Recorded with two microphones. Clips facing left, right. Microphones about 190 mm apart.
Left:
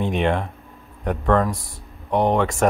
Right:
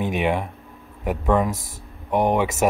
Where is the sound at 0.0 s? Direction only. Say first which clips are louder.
Left 1 dB; 5° right (ahead or behind).